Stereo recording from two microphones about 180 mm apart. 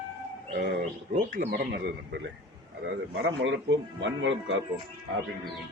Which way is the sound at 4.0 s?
90° right.